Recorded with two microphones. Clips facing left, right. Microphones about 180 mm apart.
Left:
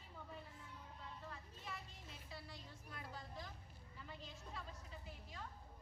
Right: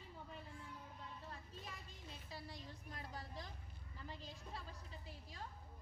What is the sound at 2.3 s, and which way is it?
Speech, 40° right (ahead or behind).